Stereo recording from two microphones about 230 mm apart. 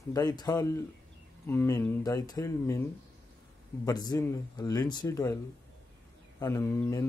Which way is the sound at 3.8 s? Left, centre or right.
Centre.